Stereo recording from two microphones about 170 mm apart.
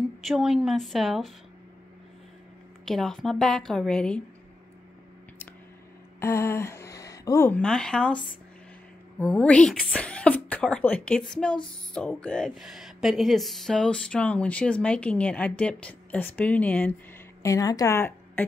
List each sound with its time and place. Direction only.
0.2 s a woman's voice: centre (ahead or behind)
2.8 s a woman's voice: 5° left (ahead or behind)
6.1 s a woman's voice: 15° left (ahead or behind)
9.2 s a woman's voice: 5° left (ahead or behind)